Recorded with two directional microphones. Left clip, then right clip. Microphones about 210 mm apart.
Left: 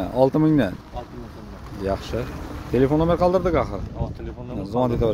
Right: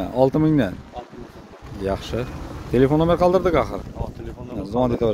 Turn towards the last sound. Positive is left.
turn(degrees=-10)  # may be behind; listen again after turning